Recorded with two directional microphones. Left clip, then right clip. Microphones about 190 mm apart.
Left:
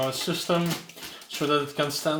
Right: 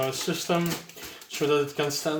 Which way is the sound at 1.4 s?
30° left (ahead or behind).